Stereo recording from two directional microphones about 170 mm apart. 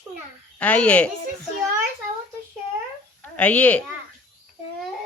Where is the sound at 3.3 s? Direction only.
10° left (ahead or behind).